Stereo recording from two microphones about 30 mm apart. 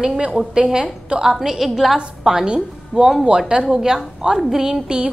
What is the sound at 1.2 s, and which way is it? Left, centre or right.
Speech, centre.